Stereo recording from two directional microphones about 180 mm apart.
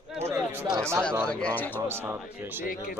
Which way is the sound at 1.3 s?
10° left (ahead or behind).